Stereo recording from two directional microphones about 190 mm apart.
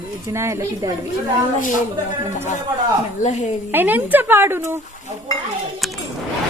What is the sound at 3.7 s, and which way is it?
Speech, 10° right (ahead or behind).